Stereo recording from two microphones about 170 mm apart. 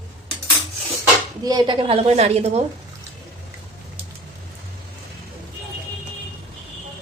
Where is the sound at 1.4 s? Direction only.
25° right (ahead or behind).